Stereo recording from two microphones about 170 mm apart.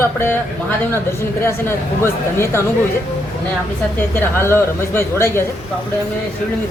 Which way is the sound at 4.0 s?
15° left (ahead or behind).